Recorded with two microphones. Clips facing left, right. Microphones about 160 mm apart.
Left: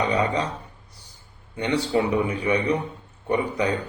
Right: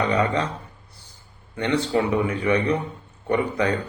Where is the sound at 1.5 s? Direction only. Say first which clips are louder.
Right 1 dB; 15° left (ahead or behind).